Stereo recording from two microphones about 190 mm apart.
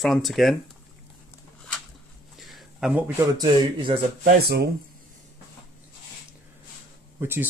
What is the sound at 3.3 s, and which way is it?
Speech, 25° right (ahead or behind).